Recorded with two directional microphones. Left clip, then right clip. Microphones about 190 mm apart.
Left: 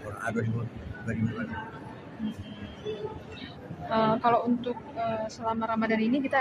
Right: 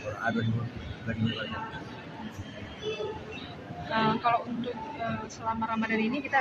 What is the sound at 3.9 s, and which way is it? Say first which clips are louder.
A woman's voice: left 2 dB; 70° left (ahead or behind).